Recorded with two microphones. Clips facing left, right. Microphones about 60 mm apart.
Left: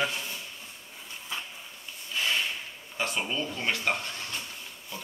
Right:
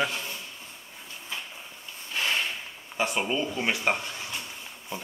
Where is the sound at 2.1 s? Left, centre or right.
Right.